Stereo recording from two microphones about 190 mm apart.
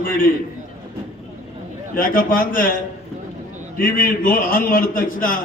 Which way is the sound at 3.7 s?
45° left (ahead or behind).